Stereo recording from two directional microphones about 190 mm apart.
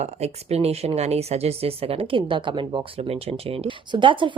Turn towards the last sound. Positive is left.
turn(degrees=-25)  # may be behind; listen again after turning